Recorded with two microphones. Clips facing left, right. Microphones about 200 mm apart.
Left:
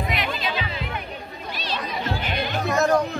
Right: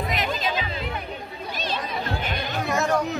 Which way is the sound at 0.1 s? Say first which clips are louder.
Right 1 dB; 45° right (ahead or behind).